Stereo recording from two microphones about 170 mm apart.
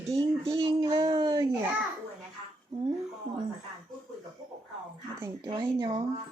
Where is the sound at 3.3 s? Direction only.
45° right (ahead or behind).